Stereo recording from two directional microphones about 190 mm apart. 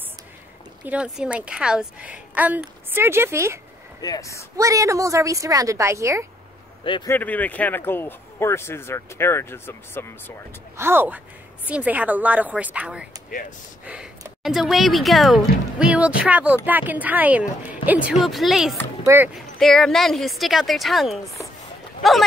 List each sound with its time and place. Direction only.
0.8 s a woman's voice: 5° right (ahead or behind)
4.0 s speech: 20° left (ahead or behind)
4.6 s a woman's voice: 15° right (ahead or behind)
7.1 s speech: 10° left (ahead or behind)
10.8 s a woman's voice: 10° right (ahead or behind)
19.0 s a woman's voice: 10° right (ahead or behind)
19.3 s speech: centre (ahead or behind)